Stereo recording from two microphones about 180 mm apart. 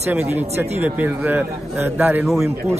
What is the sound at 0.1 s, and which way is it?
A man's voice, 10° right (ahead or behind).